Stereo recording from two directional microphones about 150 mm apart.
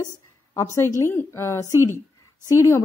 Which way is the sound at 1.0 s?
15° left (ahead or behind).